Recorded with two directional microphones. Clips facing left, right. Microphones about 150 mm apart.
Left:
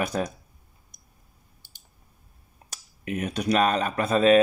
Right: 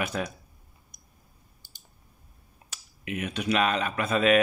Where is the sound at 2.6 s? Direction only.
40° left (ahead or behind).